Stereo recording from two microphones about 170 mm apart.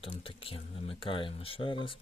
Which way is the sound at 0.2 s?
30° left (ahead or behind).